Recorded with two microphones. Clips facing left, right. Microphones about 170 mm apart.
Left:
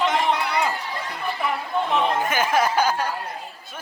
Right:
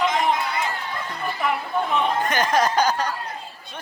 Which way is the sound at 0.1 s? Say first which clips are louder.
Even; 70° left (ahead or behind).